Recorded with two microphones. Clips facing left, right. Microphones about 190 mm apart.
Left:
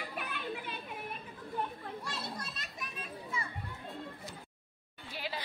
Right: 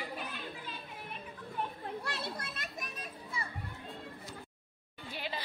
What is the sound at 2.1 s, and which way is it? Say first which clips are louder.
Children playing: right 1 dB; 55° right (ahead or behind).